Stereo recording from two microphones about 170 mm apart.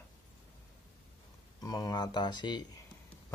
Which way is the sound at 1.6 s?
20° left (ahead or behind).